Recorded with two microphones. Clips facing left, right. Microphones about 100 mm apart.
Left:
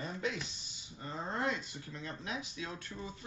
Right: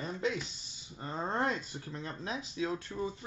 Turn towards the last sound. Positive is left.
turn(degrees=-30)  # may be behind; listen again after turning